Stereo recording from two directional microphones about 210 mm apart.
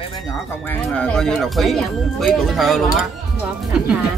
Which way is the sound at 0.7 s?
5° left (ahead or behind).